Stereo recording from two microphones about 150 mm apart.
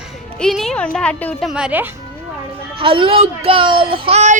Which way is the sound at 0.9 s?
5° left (ahead or behind).